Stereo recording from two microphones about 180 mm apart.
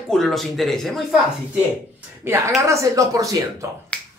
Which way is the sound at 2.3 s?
15° right (ahead or behind).